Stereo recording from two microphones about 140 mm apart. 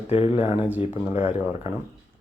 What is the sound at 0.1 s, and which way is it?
Mantra, 45° left (ahead or behind).